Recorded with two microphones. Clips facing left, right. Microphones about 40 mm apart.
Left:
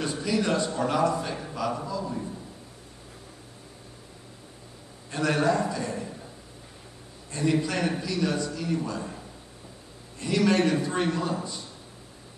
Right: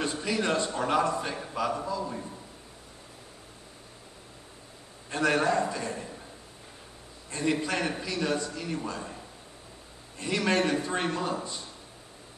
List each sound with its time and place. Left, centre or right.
0.2 s a man's voice: right
5.1 s a man's voice: right
7.2 s a man's voice: right
8.9 s a man's voice: centre
10.1 s a man's voice: right